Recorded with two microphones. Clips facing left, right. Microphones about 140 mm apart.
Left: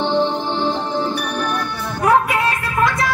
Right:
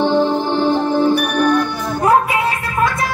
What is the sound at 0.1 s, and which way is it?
Music, 10° right (ahead or behind).